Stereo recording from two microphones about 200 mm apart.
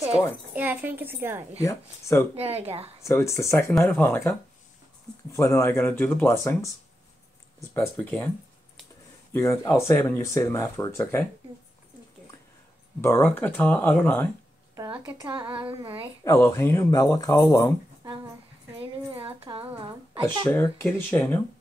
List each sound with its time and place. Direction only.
0.5 s a woman's voice: 10° right (ahead or behind)
1.6 s speech: 15° left (ahead or behind)
2.3 s speech: 30° right (ahead or behind)
3.0 s speech: 15° left (ahead or behind)
7.7 s speech: 10° left (ahead or behind)
9.3 s speech: 15° left (ahead or behind)
13.0 s speech: 10° left (ahead or behind)
14.8 s speech: 15° right (ahead or behind)
16.3 s speech: 15° left (ahead or behind)
19.1 s speech: 25° right (ahead or behind)
20.4 s speech: 10° left (ahead or behind)